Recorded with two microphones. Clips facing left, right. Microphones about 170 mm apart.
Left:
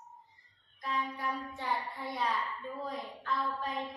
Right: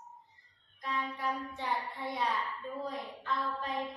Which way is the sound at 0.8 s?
Centre (ahead or behind).